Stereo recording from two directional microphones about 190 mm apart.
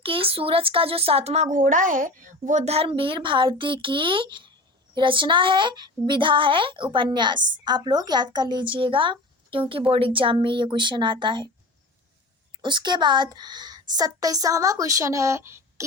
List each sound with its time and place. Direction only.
0.0 s a woman's voice: 30° right (ahead or behind)
12.6 s a woman's voice: 25° right (ahead or behind)